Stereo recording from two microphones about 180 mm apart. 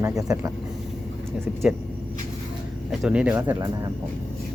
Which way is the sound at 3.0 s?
5° right (ahead or behind).